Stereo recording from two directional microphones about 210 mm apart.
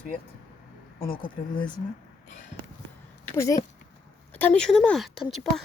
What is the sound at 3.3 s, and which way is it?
A woman's voice, 15° left (ahead or behind).